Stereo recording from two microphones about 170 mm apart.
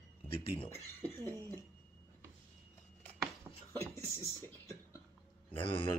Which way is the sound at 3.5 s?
10° right (ahead or behind).